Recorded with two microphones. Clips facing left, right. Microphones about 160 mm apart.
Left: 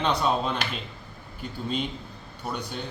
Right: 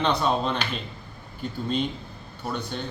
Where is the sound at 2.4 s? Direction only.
10° left (ahead or behind).